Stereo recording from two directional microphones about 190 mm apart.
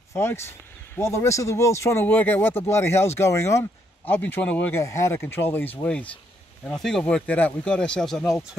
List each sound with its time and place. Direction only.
0.1 s speech: 15° left (ahead or behind)